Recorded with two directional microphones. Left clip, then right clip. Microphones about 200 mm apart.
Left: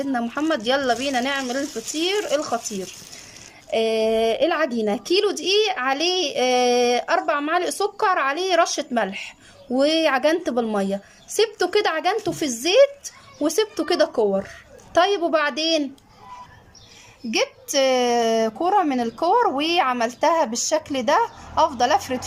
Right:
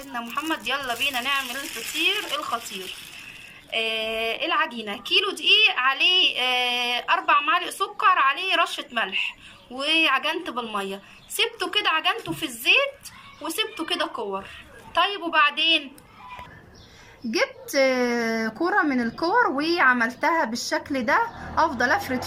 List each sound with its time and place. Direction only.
0.1 s a woman's voice: 40° left (ahead or behind)
3.7 s a woman's voice: 45° left (ahead or behind)
17.3 s a woman's voice: 10° left (ahead or behind)